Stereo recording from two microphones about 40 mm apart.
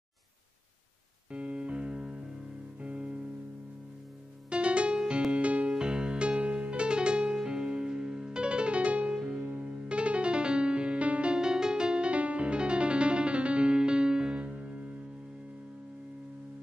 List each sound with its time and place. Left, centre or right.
1.3 s music: right
2.8 s music: right
4.5 s music: right
9.1 s music: centre
9.4 s music: right